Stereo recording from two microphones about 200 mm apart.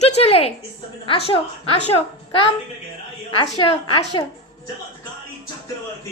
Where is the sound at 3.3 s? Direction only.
25° left (ahead or behind).